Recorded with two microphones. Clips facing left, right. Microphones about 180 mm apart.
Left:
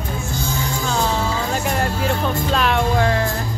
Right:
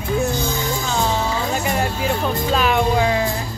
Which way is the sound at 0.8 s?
Centre (ahead or behind).